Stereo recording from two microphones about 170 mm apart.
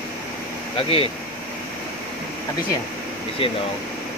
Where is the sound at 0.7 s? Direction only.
35° left (ahead or behind).